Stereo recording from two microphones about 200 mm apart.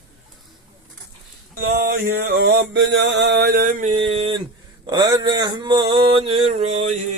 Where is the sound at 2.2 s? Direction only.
55° right (ahead or behind); by 4.0 s 40° right (ahead or behind).